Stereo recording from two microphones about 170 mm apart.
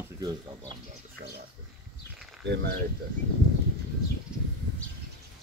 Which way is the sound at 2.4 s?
80° right.